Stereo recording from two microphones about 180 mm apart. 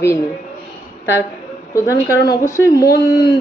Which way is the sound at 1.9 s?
20° left (ahead or behind).